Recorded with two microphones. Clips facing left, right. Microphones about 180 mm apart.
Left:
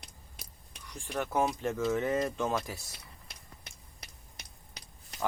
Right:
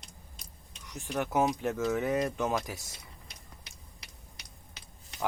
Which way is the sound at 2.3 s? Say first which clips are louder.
Right 1 dB; 15° right (ahead or behind).